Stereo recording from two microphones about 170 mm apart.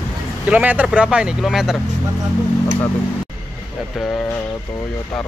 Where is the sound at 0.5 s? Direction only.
10° right (ahead or behind).